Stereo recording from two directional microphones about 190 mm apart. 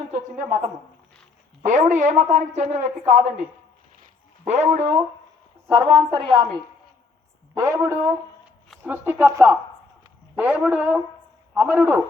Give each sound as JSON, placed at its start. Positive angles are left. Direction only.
{"t": 1.6, "sound": "a woman's voice", "side_deg": -40}
{"t": 4.0, "sound": "a sound", "side_deg": -35}
{"t": 4.8, "sound": "speech", "side_deg": -10}
{"t": 5.6, "sound": "a woman's voice", "side_deg": -25}
{"t": 7.5, "sound": "speech", "side_deg": -15}